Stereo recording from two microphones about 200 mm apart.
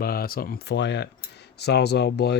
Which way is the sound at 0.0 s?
50° left (ahead or behind).